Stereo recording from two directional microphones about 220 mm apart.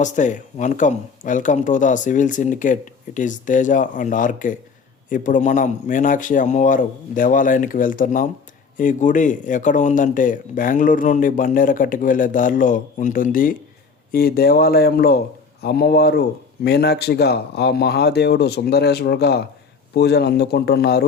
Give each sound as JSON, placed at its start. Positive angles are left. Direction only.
{"t": 0.0, "sound": "speech", "side_deg": 35}